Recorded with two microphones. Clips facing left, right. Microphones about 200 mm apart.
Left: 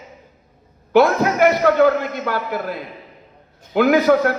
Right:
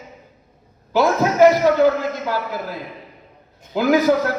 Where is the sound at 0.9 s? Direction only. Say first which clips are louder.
Left 3 dB; 60° left (ahead or behind).